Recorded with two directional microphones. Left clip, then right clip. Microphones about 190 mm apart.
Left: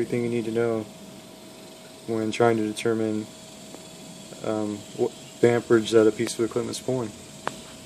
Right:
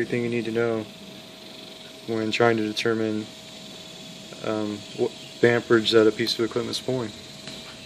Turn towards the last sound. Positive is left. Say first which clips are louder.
# right 1 dB
turn(degrees=0)  # may be behind; listen again after turning